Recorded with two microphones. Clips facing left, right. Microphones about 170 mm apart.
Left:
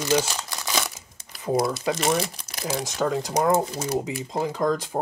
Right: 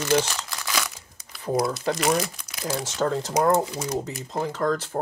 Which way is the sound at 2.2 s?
30° left (ahead or behind).